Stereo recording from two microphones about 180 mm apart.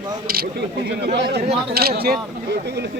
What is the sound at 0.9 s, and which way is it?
Speech, 65° right (ahead or behind).